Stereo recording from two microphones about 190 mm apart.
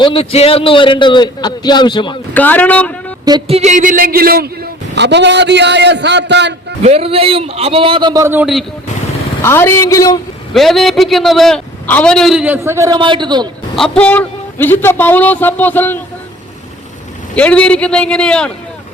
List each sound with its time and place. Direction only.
0.0 s a man's voice: 30° left (ahead or behind)
2.3 s a man's voice: 10° left (ahead or behind)
3.2 s a man's voice: 25° right (ahead or behind); by 6.7 s 65° right (ahead or behind)
6.8 s a man's voice: 30° right (ahead or behind); by 8.6 s 5° right (ahead or behind)
9.4 s a man's voice: 15° left (ahead or behind)
10.5 s a man's voice: centre (ahead or behind); by 13.5 s 25° right (ahead or behind)
13.7 s a man's voice: 5° left (ahead or behind)
17.3 s a man's voice: 5° left (ahead or behind)